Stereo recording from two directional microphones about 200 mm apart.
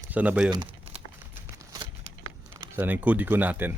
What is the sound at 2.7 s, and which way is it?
A man's voice, 10° right (ahead or behind).